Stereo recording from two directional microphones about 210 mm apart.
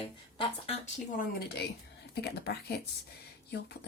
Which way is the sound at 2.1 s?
50° left (ahead or behind).